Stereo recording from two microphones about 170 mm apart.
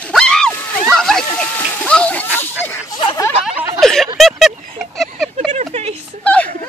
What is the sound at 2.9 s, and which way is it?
Speech, 25° left (ahead or behind).